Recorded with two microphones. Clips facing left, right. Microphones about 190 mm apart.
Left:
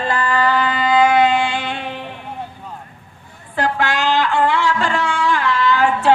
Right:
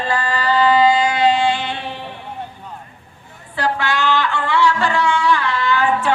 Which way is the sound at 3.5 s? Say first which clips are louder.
Left 1 dB; 45° left (ahead or behind).